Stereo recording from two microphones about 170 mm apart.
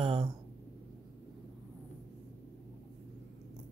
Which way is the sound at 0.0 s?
30° right (ahead or behind).